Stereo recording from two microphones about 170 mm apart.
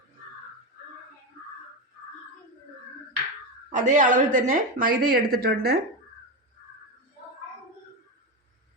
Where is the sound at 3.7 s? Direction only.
45° right (ahead or behind); by 5.8 s 65° right (ahead or behind).